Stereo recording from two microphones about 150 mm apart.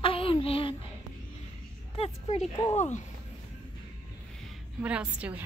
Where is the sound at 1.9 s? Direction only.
40° left (ahead or behind).